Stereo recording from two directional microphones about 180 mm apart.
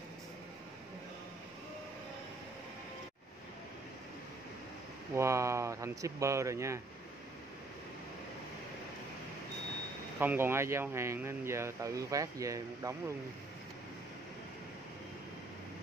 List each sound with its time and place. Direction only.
5.1 s speech: 15° right (ahead or behind)
10.1 s speech: 10° right (ahead or behind)